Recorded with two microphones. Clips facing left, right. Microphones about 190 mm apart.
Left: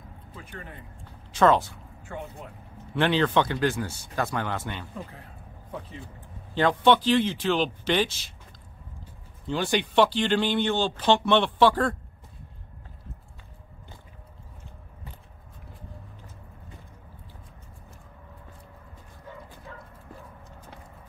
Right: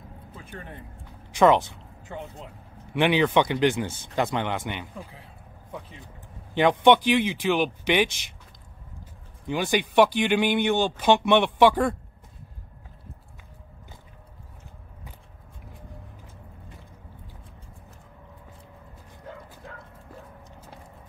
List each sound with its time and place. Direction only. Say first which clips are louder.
1.3 s speech: right 2 dB; 15° right (ahead or behind)
6.5 s speech: right 3 dB; 20° right (ahead or behind)
9.5 s speech: right 1 dB; 10° right (ahead or behind)